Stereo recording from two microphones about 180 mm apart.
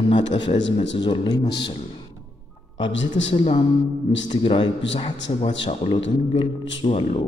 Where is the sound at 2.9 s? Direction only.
90° left.